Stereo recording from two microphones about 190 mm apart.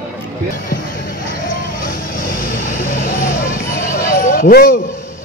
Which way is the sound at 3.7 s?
50° left (ahead or behind).